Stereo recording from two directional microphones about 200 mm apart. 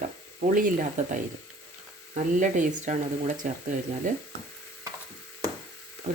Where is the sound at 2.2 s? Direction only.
40° right (ahead or behind).